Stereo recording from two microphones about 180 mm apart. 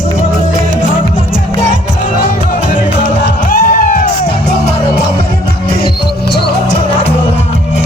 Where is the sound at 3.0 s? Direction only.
50° left (ahead or behind).